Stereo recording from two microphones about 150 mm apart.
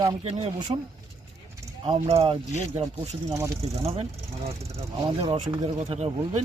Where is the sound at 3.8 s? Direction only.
40° right (ahead or behind).